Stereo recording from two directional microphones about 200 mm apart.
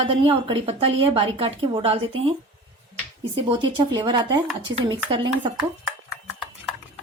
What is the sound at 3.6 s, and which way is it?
A woman's voice, 25° right (ahead or behind).